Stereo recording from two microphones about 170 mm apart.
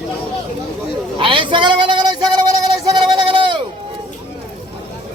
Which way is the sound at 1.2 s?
30° right (ahead or behind).